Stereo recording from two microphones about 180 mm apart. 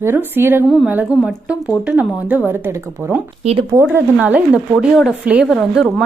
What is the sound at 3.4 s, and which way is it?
Speech, 35° right (ahead or behind).